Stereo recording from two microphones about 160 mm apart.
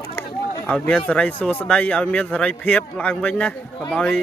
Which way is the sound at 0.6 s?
5° left (ahead or behind).